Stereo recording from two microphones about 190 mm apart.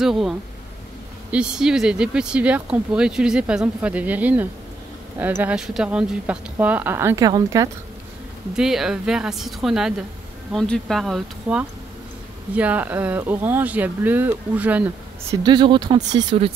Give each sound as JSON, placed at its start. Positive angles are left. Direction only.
{"t": 0.0, "sound": "speech", "side_deg": 0}
{"t": 8.5, "sound": "speech", "side_deg": -5}
{"t": 15.4, "sound": "speech", "side_deg": -25}